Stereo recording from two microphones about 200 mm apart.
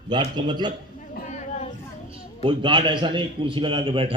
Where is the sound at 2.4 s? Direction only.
25° right (ahead or behind).